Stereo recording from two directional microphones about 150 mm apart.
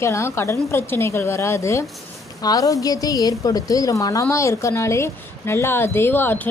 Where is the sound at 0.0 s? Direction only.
20° left (ahead or behind).